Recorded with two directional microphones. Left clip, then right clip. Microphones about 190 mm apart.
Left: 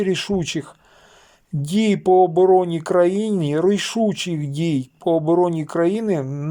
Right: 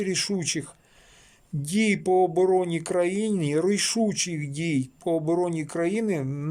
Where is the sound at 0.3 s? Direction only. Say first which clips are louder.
Left 6 dB; 35° right (ahead or behind).